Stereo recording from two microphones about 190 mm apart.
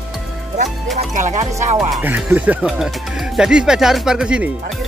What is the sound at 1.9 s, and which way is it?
Speech, 10° right (ahead or behind).